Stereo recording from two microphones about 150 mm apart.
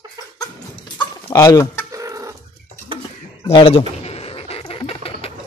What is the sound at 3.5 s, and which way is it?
Speech, 40° left (ahead or behind).